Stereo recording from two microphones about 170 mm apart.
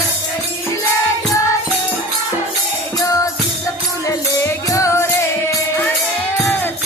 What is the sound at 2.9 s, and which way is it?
Music, 20° left (ahead or behind).